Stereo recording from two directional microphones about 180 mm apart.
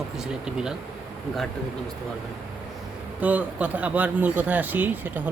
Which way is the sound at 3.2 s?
10° right (ahead or behind).